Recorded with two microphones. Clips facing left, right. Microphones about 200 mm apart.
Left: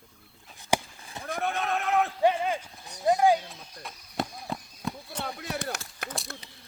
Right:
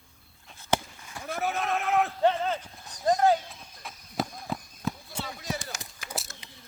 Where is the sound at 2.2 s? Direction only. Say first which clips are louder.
Left 1 dB; 10° left (ahead or behind).